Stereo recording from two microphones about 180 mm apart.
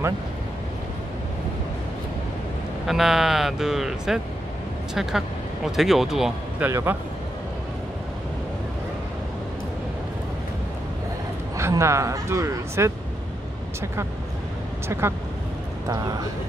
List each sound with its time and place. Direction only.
2.9 s speech: centre (ahead or behind)
5.8 s speech: centre (ahead or behind)
6.7 s speech: 15° right (ahead or behind)
11.5 s speech: 15° right (ahead or behind)
14.9 s speech: 15° right (ahead or behind)